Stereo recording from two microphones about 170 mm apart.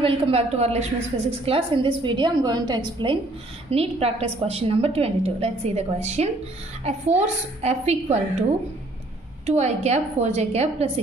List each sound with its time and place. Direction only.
0.0 s a woman's voice: 35° right (ahead or behind)
9.5 s a woman's voice: 40° right (ahead or behind)